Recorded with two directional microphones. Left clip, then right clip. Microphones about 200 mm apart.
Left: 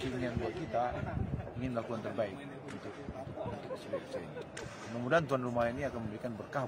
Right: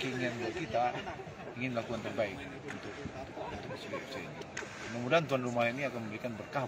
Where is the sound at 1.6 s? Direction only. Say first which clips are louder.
Right 2 dB; 5° left (ahead or behind).